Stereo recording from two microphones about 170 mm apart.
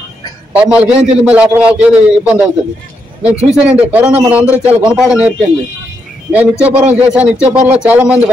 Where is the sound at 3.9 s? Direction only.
10° right (ahead or behind).